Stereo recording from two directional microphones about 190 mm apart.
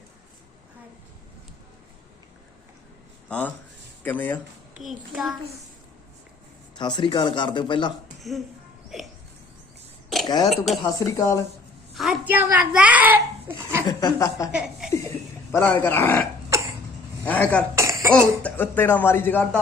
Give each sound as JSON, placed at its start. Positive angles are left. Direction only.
{"t": 3.2, "sound": "a child's voice", "side_deg": 5}
{"t": 6.7, "sound": "speech", "side_deg": 25}
{"t": 8.2, "sound": "speech", "side_deg": 0}
{"t": 8.9, "sound": "a sound", "side_deg": 0}
{"t": 10.2, "sound": "speech", "side_deg": 20}
{"t": 11.9, "sound": "a child's voice", "side_deg": -5}
{"t": 13.8, "sound": "speech", "side_deg": 20}
{"t": 14.5, "sound": "a child's voice", "side_deg": -5}
{"t": 15.5, "sound": "speech", "side_deg": 10}
{"t": 16.5, "sound": "cough", "side_deg": -15}
{"t": 17.2, "sound": "speech", "side_deg": 10}
{"t": 17.7, "sound": "cough", "side_deg": -15}
{"t": 18.4, "sound": "speech", "side_deg": 10}